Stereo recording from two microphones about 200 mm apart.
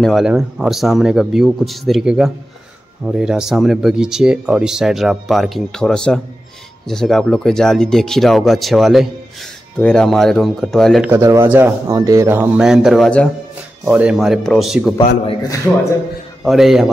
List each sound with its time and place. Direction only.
0.0 s speech: centre (ahead or behind)
11.1 s speech: 15° right (ahead or behind)
15.0 s a man's voice: 25° left (ahead or behind)
16.4 s speech: centre (ahead or behind)